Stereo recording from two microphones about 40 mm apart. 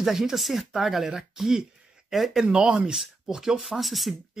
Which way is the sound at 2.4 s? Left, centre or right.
Centre.